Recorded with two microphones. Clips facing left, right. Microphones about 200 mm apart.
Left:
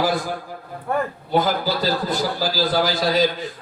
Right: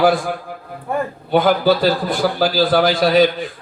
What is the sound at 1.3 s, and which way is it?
A man's voice, 60° right (ahead or behind).